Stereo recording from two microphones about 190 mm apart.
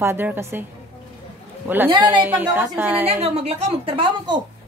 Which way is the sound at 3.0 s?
35° right (ahead or behind).